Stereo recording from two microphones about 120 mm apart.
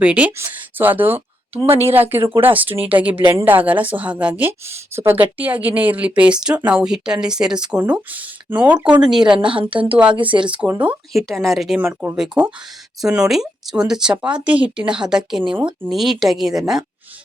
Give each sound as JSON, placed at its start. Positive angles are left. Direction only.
{"t": 0.0, "sound": "speech", "side_deg": -10}
{"t": 9.4, "sound": "speech", "side_deg": -45}
{"t": 9.9, "sound": "speech", "side_deg": -10}
{"t": 10.2, "sound": "speech", "side_deg": -45}
{"t": 10.7, "sound": "speech", "side_deg": -10}
{"t": 11.1, "sound": "speech", "side_deg": 0}
{"t": 15.5, "sound": "speech", "side_deg": -15}
{"t": 15.9, "sound": "speech", "side_deg": 0}